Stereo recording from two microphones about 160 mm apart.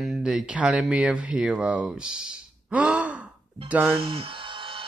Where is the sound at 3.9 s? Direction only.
35° right (ahead or behind).